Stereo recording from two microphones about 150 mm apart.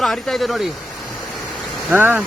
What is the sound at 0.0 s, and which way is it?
Speech, centre (ahead or behind).